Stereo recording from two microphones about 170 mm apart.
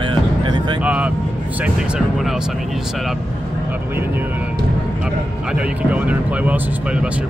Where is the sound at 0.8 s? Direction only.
5° right (ahead or behind).